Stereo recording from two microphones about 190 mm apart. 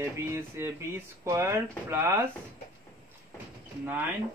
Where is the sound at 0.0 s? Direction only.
15° right (ahead or behind).